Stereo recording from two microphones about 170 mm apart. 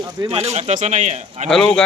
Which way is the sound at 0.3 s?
40° right (ahead or behind).